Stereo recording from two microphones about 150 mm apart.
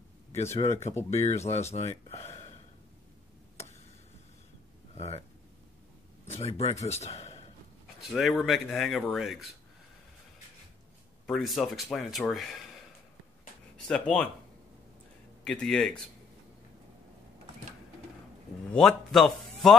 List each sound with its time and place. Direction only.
0.4 s speech: 45° left (ahead or behind)
4.9 s a sound: 45° left (ahead or behind)
6.2 s speech: 45° left (ahead or behind)
8.0 s speech: centre (ahead or behind)
11.2 s speech: centre (ahead or behind)
13.7 s speech: 5° left (ahead or behind)
15.4 s speech: 5° left (ahead or behind)
18.7 s speech: 5° left (ahead or behind)